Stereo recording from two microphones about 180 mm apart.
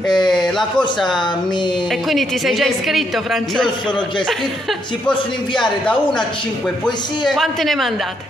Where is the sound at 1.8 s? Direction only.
Centre (ahead or behind).